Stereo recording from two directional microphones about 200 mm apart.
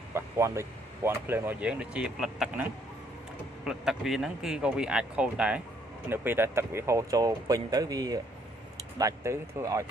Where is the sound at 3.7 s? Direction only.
Centre (ahead or behind).